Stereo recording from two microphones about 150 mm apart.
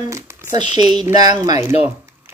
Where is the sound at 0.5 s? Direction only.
50° left (ahead or behind).